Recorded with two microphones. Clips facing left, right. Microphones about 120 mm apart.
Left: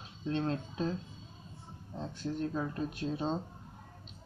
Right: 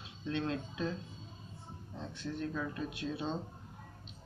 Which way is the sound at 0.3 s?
35° left (ahead or behind).